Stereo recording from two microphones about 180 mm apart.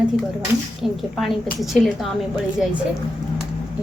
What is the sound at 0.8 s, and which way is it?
A woman's voice, centre (ahead or behind).